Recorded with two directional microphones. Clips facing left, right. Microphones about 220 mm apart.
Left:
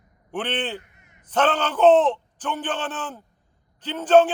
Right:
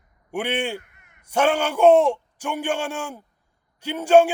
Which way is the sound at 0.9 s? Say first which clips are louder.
Left 2 dB; 60° right (ahead or behind).